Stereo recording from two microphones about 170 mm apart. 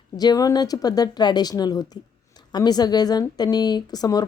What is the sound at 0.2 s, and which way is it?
Speech, 20° left (ahead or behind).